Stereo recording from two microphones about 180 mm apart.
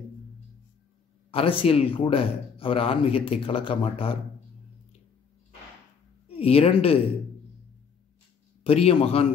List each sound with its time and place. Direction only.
1.3 s speech: 30° left (ahead or behind)
6.2 s speech: 35° left (ahead or behind)
8.6 s speech: 35° left (ahead or behind)